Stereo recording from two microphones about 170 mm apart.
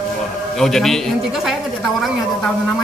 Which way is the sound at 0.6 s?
Centre (ahead or behind).